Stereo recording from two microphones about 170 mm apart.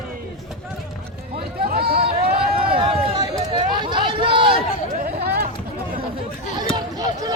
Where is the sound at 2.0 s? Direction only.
35° right (ahead or behind).